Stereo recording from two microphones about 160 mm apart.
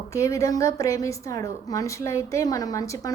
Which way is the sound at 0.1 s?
20° left (ahead or behind).